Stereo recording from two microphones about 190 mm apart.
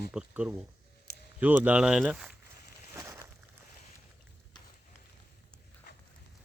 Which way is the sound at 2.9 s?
15° right (ahead or behind).